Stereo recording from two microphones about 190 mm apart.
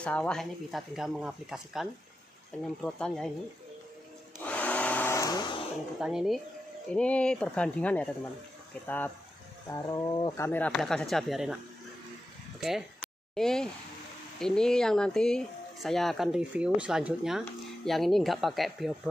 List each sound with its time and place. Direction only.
0.0 s speech: 5° left (ahead or behind)
4.5 s blender: 5° left (ahead or behind); by 5.7 s 25° left (ahead or behind)
5.9 s speech: 5° right (ahead or behind)
12.5 s speech: centre (ahead or behind)